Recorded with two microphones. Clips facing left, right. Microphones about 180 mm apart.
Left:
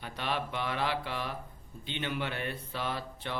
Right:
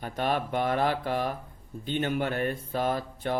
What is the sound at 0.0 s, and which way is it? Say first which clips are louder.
Speech: right 6 dB; 45° right (ahead or behind).